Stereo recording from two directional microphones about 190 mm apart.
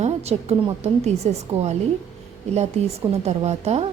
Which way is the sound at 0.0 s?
35° right (ahead or behind).